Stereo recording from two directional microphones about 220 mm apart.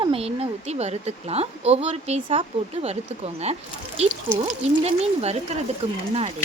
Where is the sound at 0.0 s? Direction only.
25° right (ahead or behind).